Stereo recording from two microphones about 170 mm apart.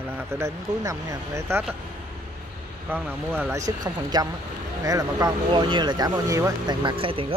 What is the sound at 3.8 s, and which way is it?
Speech, 25° right (ahead or behind).